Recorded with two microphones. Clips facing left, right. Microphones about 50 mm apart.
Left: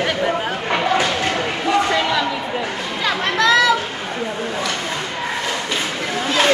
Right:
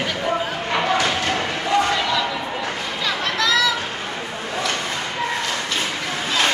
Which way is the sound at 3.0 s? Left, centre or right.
Left.